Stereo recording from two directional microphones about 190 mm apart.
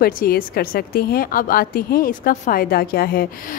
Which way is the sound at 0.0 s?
50° left (ahead or behind).